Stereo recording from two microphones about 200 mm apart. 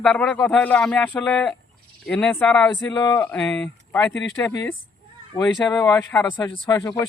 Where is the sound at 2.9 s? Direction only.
15° left (ahead or behind).